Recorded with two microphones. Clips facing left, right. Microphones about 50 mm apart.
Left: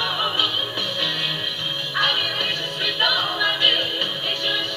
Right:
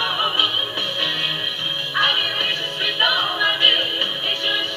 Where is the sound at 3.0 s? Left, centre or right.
Right.